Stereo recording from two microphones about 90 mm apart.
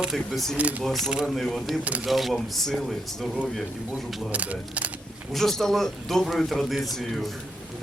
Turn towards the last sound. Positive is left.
turn(degrees=0)  # may be behind; listen again after turning